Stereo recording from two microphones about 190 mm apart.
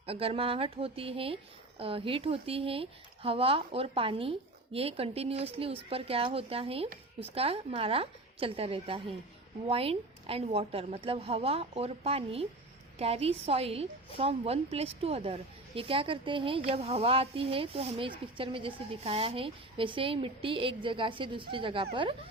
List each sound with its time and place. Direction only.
0.0 s a woman's voice: 30° right (ahead or behind)